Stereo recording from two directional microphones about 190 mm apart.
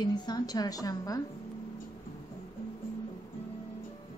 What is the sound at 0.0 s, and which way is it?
A woman's voice, 20° left (ahead or behind).